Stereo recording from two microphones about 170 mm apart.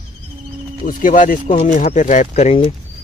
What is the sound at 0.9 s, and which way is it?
Speech, 50° left (ahead or behind).